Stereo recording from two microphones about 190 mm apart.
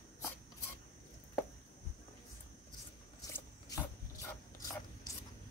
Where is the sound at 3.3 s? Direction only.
15° left (ahead or behind).